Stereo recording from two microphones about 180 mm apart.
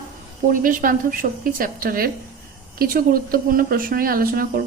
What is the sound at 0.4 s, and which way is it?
Speech, 50° right (ahead or behind).